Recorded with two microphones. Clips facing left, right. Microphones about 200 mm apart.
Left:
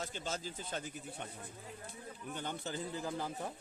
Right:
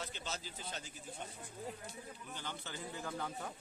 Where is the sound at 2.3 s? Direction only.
50° left (ahead or behind).